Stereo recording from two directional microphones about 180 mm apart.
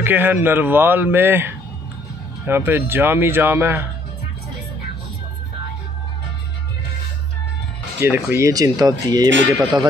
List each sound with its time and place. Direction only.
0.0 s a man's voice: 10° right (ahead or behind)
8.0 s speech: 15° right (ahead or behind)